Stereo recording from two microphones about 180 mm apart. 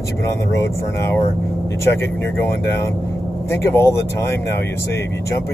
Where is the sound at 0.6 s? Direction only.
15° left (ahead or behind).